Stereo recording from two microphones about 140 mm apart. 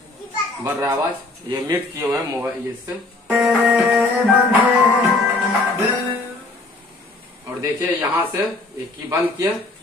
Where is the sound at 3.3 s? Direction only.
15° right (ahead or behind).